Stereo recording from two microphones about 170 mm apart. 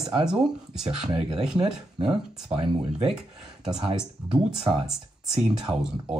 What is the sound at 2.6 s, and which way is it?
Speech, 30° right (ahead or behind).